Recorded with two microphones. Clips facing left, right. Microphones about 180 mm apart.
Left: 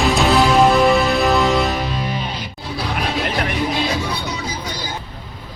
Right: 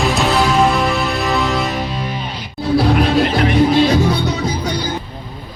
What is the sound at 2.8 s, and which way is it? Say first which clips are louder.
Music: right 9 dB; 45° right (ahead or behind).